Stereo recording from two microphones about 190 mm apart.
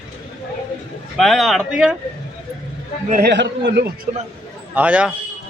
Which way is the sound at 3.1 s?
55° right (ahead or behind).